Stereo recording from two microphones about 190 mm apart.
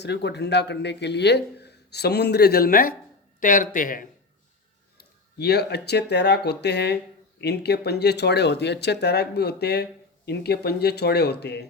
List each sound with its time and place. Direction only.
0.0 s speech: 60° left (ahead or behind); by 4.0 s 45° left (ahead or behind)
4.9 s speech: 60° left (ahead or behind)